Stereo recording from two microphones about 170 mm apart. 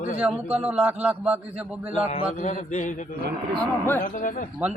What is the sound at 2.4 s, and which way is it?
Speech, 45° left (ahead or behind).